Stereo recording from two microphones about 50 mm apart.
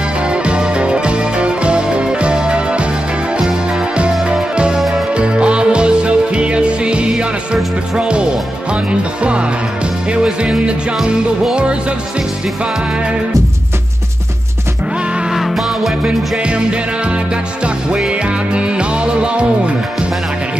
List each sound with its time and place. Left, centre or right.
0.3 s music: right
8.0 s speech: right
9.2 s music: right
15.3 s music: centre
16.0 s music: right
17.9 s music: right